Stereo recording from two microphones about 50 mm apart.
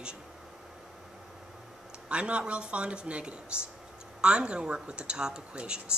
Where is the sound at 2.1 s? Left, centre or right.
Right.